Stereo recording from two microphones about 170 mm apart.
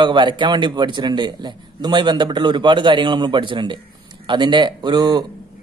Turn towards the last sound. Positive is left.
turn(degrees=-25)  # may be behind; listen again after turning